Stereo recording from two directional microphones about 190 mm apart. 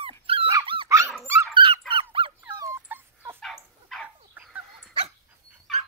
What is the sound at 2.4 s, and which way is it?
Dog, 15° right (ahead or behind).